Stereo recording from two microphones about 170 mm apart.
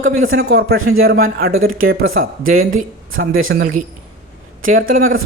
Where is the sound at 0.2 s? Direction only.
70° right (ahead or behind).